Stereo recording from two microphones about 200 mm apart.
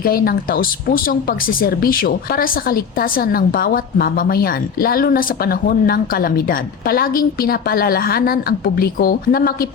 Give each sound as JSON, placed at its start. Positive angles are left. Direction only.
{"t": 0.0, "sound": "speech", "side_deg": 50}